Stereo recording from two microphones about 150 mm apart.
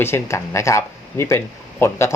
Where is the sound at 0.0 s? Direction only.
15° left (ahead or behind).